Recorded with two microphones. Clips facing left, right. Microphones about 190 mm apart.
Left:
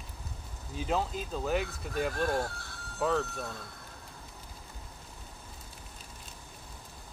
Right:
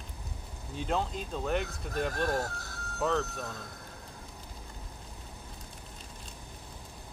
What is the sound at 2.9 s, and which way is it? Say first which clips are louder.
Speech: even; 10° left (ahead or behind).